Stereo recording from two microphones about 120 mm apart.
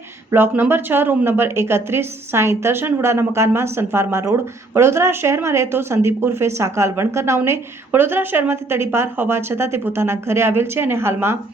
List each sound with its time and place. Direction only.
0.3 s speech: 20° right (ahead or behind)